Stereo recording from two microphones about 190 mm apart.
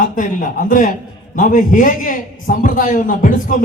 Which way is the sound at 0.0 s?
45° left (ahead or behind).